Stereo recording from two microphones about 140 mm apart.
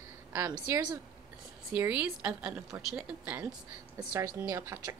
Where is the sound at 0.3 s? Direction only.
20° right (ahead or behind).